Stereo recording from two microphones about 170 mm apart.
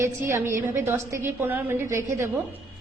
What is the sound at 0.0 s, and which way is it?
A woman's voice, 15° right (ahead or behind).